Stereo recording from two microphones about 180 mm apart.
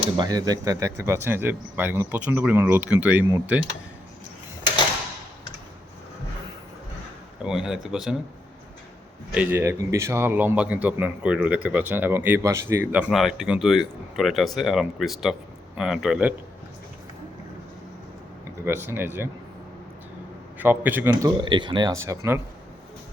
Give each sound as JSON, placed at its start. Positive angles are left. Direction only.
{"t": 0.0, "sound": "a man's voice", "side_deg": -25}
{"t": 7.4, "sound": "speech", "side_deg": -5}
{"t": 9.3, "sound": "a man's voice", "side_deg": -10}
{"t": 18.6, "sound": "a man's voice", "side_deg": -15}
{"t": 20.6, "sound": "a man's voice", "side_deg": -10}